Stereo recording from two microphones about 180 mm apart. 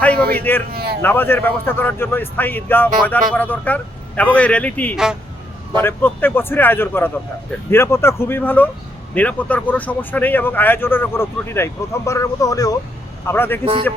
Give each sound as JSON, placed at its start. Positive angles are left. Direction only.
{"t": 0.0, "sound": "a man's voice", "side_deg": 5}
{"t": 0.7, "sound": "speech", "side_deg": -60}
{"t": 1.0, "sound": "a man's voice", "side_deg": 10}